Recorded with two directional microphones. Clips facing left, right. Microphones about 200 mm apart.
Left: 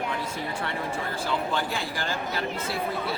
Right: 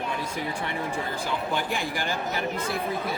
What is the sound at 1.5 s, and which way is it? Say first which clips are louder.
Speech: right 1 dB; 15° right (ahead or behind).